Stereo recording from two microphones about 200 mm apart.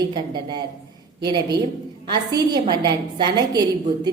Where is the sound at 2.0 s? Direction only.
20° right (ahead or behind).